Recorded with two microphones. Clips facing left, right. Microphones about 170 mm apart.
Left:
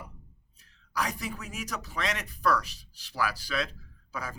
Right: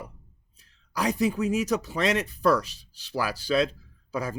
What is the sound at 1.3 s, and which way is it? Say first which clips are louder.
Speech: right 13 dB; 25° right (ahead or behind).